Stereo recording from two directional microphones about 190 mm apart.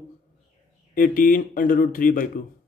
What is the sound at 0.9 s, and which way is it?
Speech, 45° left (ahead or behind).